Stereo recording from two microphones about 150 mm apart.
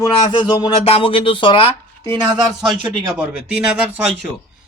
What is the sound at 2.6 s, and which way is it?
A man's voice, centre (ahead or behind).